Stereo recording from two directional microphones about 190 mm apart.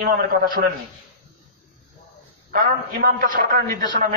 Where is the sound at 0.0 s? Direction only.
50° right (ahead or behind).